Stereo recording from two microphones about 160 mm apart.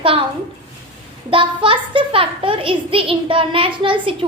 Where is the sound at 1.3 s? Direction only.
35° right (ahead or behind).